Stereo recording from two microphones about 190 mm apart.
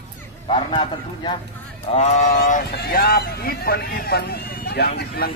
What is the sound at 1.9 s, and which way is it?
Speech, 35° left (ahead or behind).